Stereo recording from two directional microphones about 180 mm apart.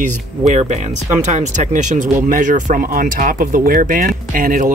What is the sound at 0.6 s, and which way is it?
Speech, 40° right (ahead or behind).